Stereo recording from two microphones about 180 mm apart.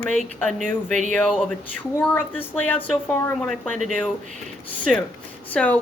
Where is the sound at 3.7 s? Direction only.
45° right (ahead or behind).